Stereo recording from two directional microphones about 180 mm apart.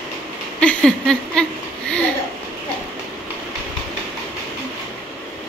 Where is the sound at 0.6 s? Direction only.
5° left (ahead or behind).